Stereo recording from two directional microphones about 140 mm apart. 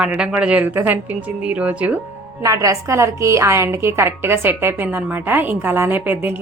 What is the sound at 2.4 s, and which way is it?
A woman's voice, 25° right (ahead or behind).